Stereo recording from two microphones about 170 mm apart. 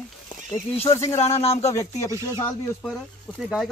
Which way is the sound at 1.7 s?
15° left (ahead or behind).